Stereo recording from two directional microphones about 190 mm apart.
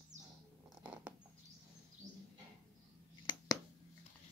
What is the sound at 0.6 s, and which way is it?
Patter, 5° right (ahead or behind).